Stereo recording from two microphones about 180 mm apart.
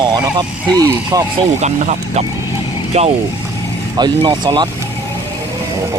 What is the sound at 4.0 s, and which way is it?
Speech, 25° right (ahead or behind).